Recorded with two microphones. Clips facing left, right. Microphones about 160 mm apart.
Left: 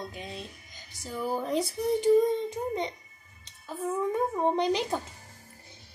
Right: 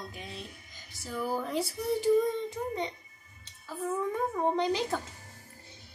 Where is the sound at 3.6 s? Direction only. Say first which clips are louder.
Left 2 dB; 20° left (ahead or behind).